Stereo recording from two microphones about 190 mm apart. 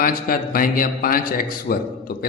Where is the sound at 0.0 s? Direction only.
50° left (ahead or behind).